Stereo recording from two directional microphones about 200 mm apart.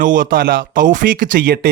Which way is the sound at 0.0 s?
40° right (ahead or behind).